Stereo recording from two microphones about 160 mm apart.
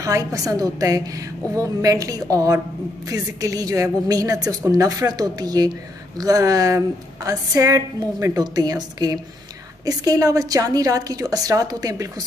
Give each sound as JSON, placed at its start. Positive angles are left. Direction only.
{"t": 0.0, "sound": "a woman's voice", "side_deg": -20}